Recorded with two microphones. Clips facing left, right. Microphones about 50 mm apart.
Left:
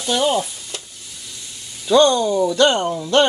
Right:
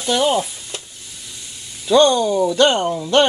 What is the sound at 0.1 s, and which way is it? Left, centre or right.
Speech, centre.